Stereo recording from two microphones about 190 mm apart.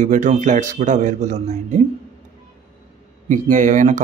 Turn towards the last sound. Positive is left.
turn(degrees=-40)  # may be behind; listen again after turning